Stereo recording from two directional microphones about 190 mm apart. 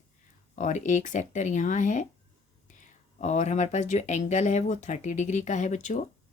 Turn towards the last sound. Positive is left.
turn(degrees=40)  # may be behind; listen again after turning